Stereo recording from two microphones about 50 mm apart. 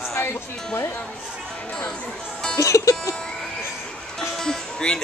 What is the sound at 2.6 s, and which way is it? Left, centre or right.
Music, left.